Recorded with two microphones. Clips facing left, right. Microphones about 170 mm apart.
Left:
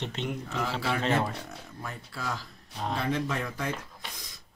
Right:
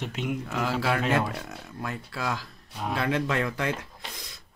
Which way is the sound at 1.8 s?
75° right (ahead or behind).